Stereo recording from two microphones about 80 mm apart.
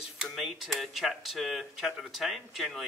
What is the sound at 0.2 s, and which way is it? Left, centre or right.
Speech, centre.